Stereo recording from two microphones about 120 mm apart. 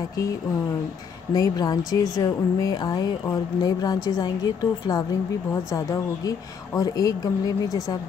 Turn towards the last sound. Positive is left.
turn(degrees=30)  # may be behind; listen again after turning